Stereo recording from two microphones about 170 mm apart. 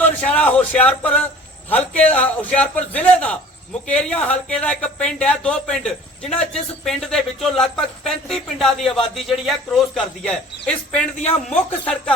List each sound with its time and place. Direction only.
0.0 s a man's voice: 5° left (ahead or behind)